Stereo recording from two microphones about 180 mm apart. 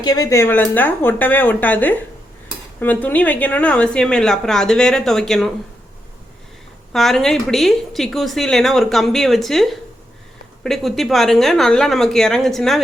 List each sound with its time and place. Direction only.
0.0 s a woman's voice: 20° left (ahead or behind); by 5.5 s centre (ahead or behind)
6.9 s a woman's voice: centre (ahead or behind)